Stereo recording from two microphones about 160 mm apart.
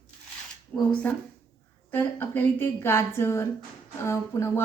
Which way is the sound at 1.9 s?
10° left (ahead or behind).